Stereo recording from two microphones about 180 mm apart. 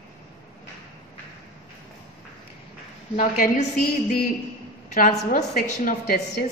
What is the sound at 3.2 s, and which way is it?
Speech, 45° left (ahead or behind).